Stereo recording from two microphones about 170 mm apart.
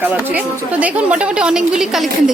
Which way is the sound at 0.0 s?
10° right (ahead or behind).